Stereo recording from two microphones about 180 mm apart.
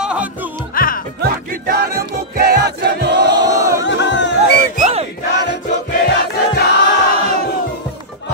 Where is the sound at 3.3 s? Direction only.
20° right (ahead or behind).